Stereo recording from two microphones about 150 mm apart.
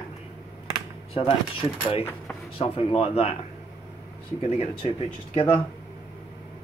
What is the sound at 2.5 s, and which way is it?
Speech, 40° left (ahead or behind).